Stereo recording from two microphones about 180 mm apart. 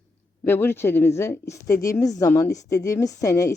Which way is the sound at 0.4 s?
10° left (ahead or behind).